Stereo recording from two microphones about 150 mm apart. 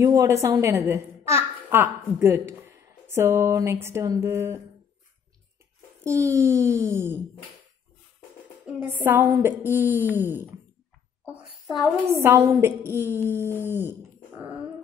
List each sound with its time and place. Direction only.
0.0 s a woman's voice: 20° right (ahead or behind)
6.0 s a child's voice: 20° right (ahead or behind)
8.6 s a woman's voice: 10° right (ahead or behind)
11.3 s a sound: centre (ahead or behind)
12.1 s a woman's voice: 15° right (ahead or behind)